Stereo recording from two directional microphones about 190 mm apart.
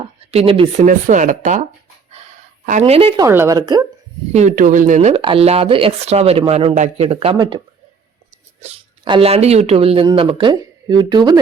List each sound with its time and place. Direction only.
0.3 s speech: 30° right (ahead or behind)
0.9 s speech: 45° right (ahead or behind)
2.6 s speech: 35° right (ahead or behind)
3.2 s speech: 15° right (ahead or behind)
4.3 s speech: 35° right (ahead or behind)
8.6 s speech: 30° right (ahead or behind)